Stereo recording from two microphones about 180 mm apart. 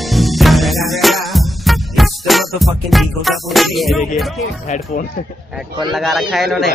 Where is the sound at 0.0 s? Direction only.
Centre (ahead or behind).